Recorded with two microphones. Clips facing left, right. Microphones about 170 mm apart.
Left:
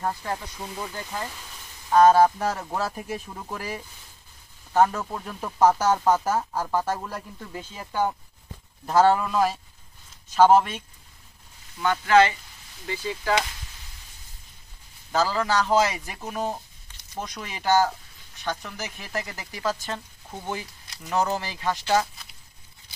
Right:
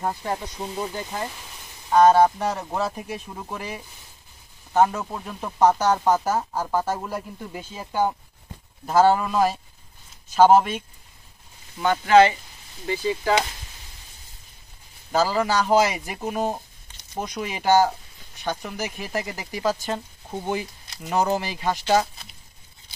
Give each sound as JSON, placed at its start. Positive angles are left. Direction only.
{"t": 0.0, "sound": "speech", "side_deg": -20}
{"t": 1.9, "sound": "speech", "side_deg": 0}
{"t": 4.8, "sound": "speech", "side_deg": -5}
{"t": 7.2, "sound": "speech", "side_deg": -15}
{"t": 8.8, "sound": "speech", "side_deg": -5}
{"t": 11.8, "sound": "speech", "side_deg": -25}
{"t": 15.1, "sound": "speech", "side_deg": -10}